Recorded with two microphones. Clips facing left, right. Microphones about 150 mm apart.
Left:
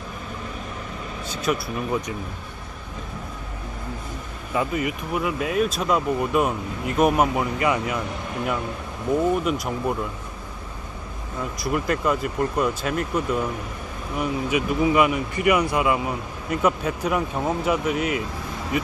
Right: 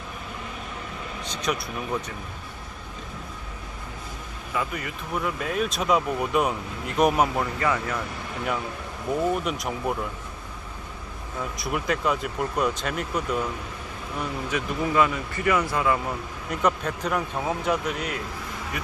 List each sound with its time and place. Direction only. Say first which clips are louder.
1.3 s speech: left 4 dB; 5° left (ahead or behind)
4.5 s speech: left 6 dB; 20° left (ahead or behind)
5.1 s speech: left 3 dB; 5° left (ahead or behind)
7.6 s speech: left 3 dB; 15° left (ahead or behind)
9.4 s speech: left 4 dB; centre (ahead or behind)
11.5 s speech: left 3 dB; centre (ahead or behind)
14.2 s speech: left 5 dB; 15° left (ahead or behind)